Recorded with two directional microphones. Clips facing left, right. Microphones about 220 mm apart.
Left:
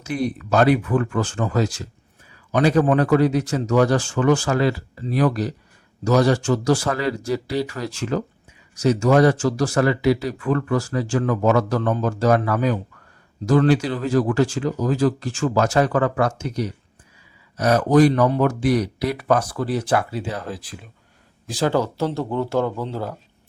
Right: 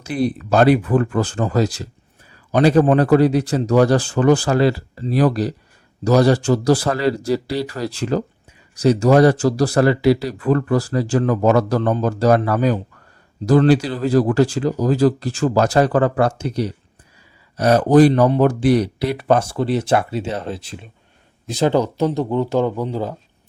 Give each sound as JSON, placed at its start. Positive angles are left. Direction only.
{"t": 0.0, "sound": "speech", "side_deg": -30}